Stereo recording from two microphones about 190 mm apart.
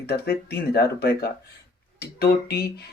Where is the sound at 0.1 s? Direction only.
55° left (ahead or behind).